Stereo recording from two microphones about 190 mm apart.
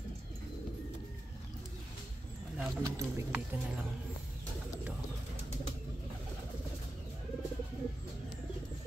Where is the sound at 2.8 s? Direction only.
15° right (ahead or behind).